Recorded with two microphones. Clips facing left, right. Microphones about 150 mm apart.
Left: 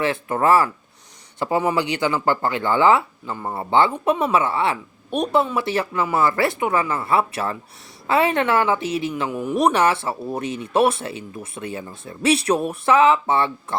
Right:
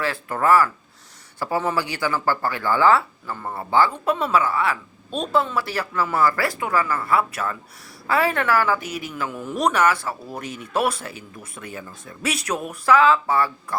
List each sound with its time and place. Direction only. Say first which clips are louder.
0.0 s a woman's voice: left 3 dB; 20° left (ahead or behind)